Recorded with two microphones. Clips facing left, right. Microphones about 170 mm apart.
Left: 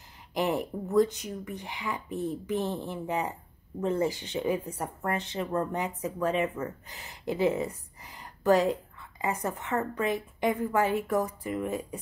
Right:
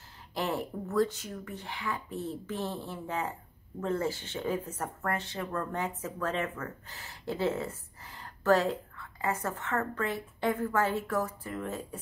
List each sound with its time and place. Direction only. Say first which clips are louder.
0.3 s a woman's voice: left 4 dB; 15° left (ahead or behind)